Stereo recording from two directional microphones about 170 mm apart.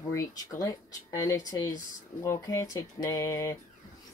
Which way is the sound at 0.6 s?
20° left (ahead or behind).